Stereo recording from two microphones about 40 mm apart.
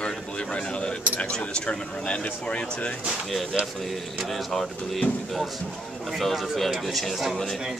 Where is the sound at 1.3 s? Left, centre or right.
Left.